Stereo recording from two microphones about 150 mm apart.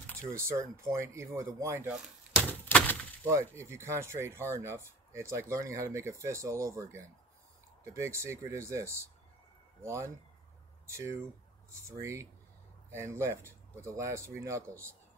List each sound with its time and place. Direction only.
0.3 s speech: 20° right (ahead or behind)
1.9 s chop: 5° right (ahead or behind)
3.3 s speech: 20° right (ahead or behind)